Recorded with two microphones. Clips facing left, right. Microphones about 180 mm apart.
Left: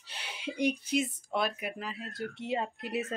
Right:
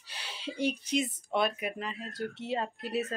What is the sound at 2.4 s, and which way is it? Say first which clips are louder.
Speech: left 2 dB; 15° left (ahead or behind).